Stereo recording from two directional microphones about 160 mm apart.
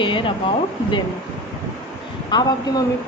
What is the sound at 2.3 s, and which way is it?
Speech, 30° left (ahead or behind).